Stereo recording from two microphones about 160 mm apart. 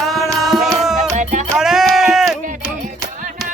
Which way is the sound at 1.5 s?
5° right (ahead or behind).